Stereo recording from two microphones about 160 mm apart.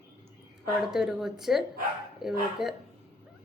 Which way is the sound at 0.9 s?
5° right (ahead or behind).